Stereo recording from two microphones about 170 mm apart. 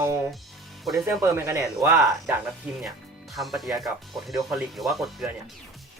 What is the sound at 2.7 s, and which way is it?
Speech, 5° right (ahead or behind).